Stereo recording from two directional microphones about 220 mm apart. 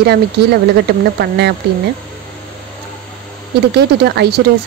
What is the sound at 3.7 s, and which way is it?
Speech, 50° right (ahead or behind).